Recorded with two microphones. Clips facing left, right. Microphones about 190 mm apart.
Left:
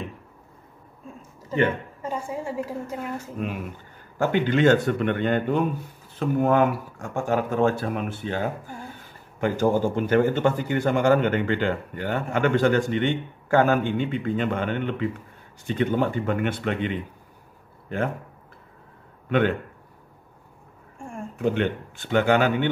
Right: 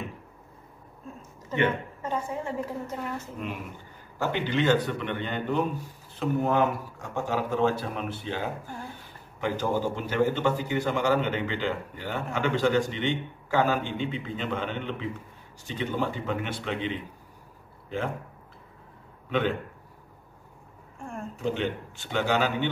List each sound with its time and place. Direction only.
1.5 s a woman's voice: 35° left (ahead or behind)
2.0 s a woman's voice: 10° left (ahead or behind)
4.2 s a man's voice: 50° left (ahead or behind)
21.4 s speech: 55° left (ahead or behind)